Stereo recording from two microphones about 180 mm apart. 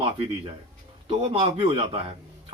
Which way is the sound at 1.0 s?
30° right (ahead or behind).